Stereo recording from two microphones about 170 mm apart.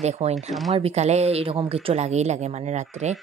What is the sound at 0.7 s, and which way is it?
Speech, 40° right (ahead or behind).